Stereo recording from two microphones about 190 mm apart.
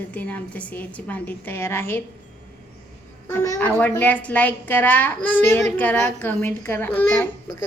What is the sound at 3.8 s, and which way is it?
A woman's voice, 10° left (ahead or behind).